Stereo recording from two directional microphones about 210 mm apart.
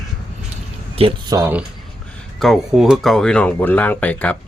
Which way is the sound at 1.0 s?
25° right (ahead or behind).